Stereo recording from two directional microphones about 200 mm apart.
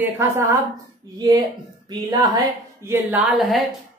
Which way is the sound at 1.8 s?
20° right (ahead or behind).